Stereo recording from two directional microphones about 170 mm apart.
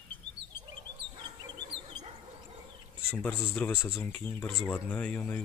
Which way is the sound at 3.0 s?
10° left (ahead or behind).